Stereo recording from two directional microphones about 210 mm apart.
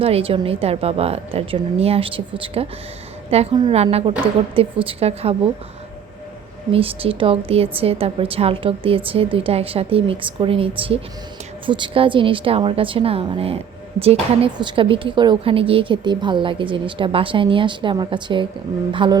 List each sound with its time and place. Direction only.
0.0 s speech: 25° right (ahead or behind)
6.7 s speech: 25° right (ahead or behind)